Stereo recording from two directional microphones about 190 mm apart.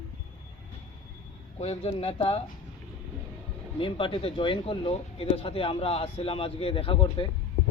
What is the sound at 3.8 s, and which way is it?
Speech, 30° left (ahead or behind).